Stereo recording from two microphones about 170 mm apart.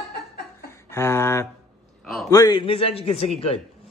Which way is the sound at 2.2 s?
20° left (ahead or behind).